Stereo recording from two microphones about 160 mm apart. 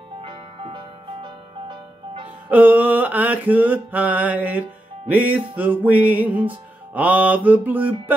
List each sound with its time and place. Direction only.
0.2 s music: 30° right (ahead or behind)
2.5 s mantra: 10° right (ahead or behind)